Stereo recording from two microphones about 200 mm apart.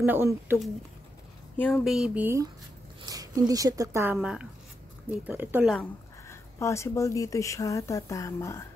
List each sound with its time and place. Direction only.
0.0 s speech: 10° right (ahead or behind)
1.6 s speech: centre (ahead or behind)
5.8 s speech: 15° left (ahead or behind)